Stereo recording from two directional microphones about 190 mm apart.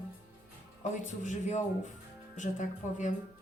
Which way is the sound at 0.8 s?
40° left (ahead or behind).